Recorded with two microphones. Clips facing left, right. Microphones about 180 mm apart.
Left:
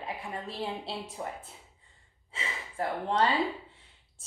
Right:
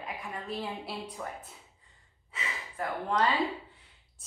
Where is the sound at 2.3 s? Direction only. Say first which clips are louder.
Left 1 dB; 30° left (ahead or behind).